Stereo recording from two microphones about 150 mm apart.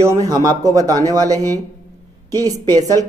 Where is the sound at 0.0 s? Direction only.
20° right (ahead or behind).